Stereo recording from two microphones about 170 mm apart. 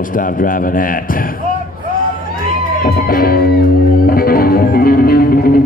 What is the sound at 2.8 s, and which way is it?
Music, 60° left (ahead or behind).